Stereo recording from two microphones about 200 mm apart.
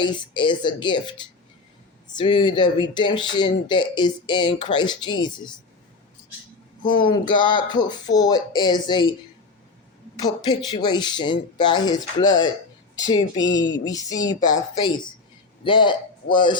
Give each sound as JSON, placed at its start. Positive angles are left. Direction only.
{"t": 0.0, "sound": "speech", "side_deg": 25}
{"t": 6.8, "sound": "speech", "side_deg": 25}
{"t": 10.2, "sound": "speech", "side_deg": 20}
{"t": 13.4, "sound": "speech", "side_deg": 65}
{"t": 13.7, "sound": "speech", "side_deg": 20}